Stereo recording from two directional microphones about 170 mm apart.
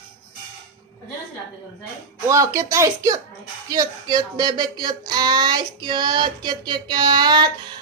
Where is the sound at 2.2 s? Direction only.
20° right (ahead or behind).